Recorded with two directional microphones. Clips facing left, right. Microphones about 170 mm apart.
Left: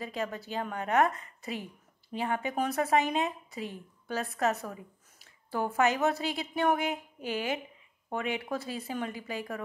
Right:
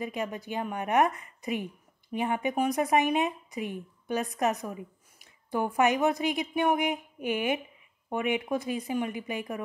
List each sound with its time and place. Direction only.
0.0 s speech: 15° right (ahead or behind)